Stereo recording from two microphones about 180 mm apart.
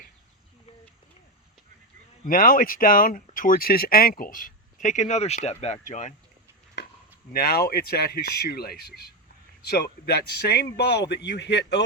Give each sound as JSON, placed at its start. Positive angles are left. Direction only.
{"t": 2.2, "sound": "speech", "side_deg": 50}
{"t": 7.3, "sound": "a man's voice", "side_deg": 60}